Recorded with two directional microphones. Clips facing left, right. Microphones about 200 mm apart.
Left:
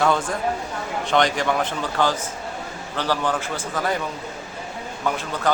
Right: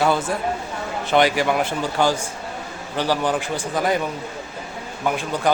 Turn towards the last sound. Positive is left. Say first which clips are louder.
# right 2 dB
turn(degrees=-15)  # may be behind; listen again after turning